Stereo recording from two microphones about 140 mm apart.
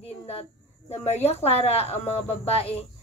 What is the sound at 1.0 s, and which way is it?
Speech, 50° left (ahead or behind).